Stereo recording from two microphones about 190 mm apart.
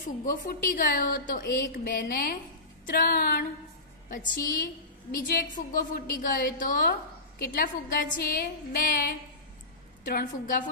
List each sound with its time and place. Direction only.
0.2 s a woman's voice: 45° left (ahead or behind)